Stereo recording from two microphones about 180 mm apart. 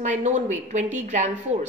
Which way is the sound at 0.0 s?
40° right (ahead or behind).